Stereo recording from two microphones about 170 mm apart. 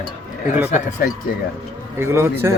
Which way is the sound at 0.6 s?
45° left (ahead or behind).